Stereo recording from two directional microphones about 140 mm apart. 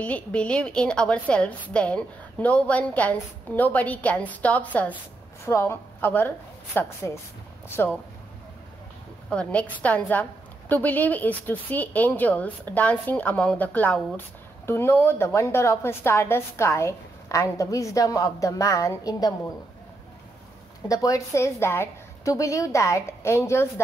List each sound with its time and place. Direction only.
0.0 s a woman's voice: 10° left (ahead or behind)
9.3 s a woman's voice: 10° left (ahead or behind); by 19.3 s 25° left (ahead or behind)
20.9 s a woman's voice: 25° left (ahead or behind)